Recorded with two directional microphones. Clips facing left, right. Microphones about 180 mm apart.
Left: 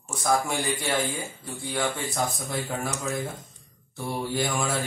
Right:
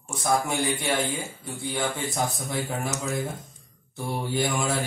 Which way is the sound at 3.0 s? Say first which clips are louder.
Right 1 dB; centre (ahead or behind).